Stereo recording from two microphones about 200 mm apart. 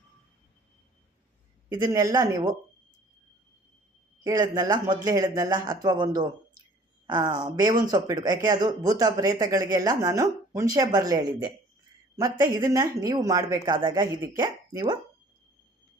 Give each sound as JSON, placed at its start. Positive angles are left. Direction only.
{"t": 1.7, "sound": "speech", "side_deg": -20}
{"t": 4.2, "sound": "speech", "side_deg": -20}
{"t": 7.1, "sound": "speech", "side_deg": -20}